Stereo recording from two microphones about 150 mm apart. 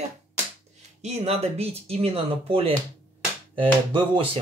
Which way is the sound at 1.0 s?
45° right (ahead or behind).